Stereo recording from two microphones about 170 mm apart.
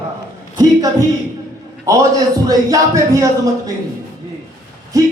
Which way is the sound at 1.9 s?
20° right (ahead or behind).